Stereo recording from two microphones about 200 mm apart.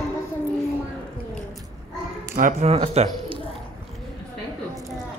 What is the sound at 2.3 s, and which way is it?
Speech, 35° right (ahead or behind).